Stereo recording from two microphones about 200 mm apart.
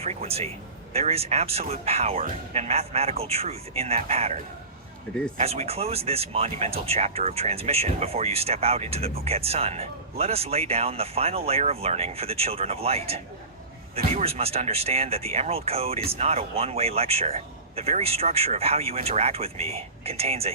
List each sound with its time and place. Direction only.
0.0 s speech: 30° right (ahead or behind)
5.4 s speech: 30° right (ahead or behind)